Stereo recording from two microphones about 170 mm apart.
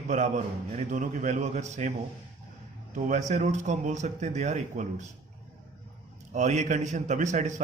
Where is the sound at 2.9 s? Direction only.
45° right (ahead or behind).